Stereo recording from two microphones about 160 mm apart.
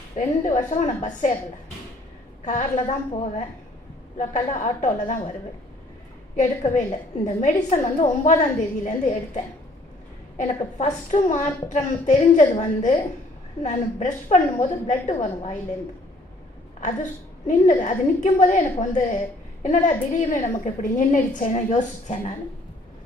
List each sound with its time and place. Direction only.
0.4 s a woman's voice: 50° left (ahead or behind)
2.4 s a woman's voice: 50° left (ahead or behind)
6.3 s a woman's voice: 50° left (ahead or behind)
16.8 s a woman's voice: 50° left (ahead or behind)